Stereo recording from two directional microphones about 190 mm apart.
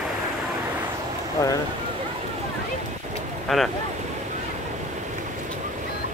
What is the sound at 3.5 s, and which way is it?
Boat, centre (ahead or behind).